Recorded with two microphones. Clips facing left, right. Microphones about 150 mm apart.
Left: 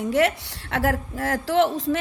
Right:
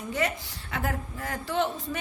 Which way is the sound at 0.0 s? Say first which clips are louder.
Left 8 dB; 90° left.